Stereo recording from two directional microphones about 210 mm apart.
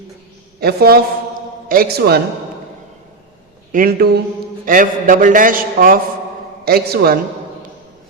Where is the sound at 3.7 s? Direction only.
45° right (ahead or behind).